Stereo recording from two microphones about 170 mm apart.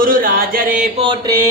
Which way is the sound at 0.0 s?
55° right (ahead or behind).